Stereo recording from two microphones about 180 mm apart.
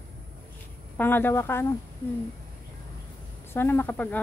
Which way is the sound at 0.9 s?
10° left (ahead or behind).